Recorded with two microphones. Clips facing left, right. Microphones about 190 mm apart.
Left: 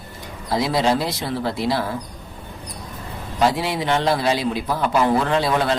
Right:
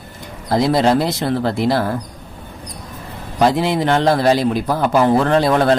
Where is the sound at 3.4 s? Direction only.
55° right (ahead or behind).